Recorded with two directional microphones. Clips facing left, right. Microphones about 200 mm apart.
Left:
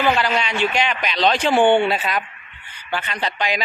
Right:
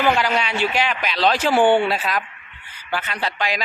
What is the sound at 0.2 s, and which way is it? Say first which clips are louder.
Speech: even; 10° right (ahead or behind).